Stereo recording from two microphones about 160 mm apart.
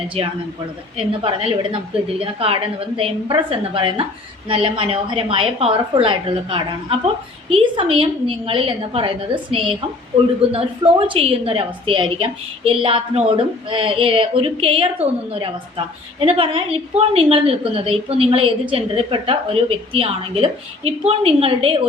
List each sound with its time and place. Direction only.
0.2 s a woman's voice: 40° right (ahead or behind)